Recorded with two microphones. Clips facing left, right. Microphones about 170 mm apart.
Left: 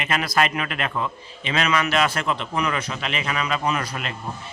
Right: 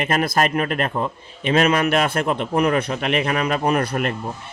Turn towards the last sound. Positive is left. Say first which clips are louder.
# right 6 dB
turn(degrees=-55)  # may be behind; listen again after turning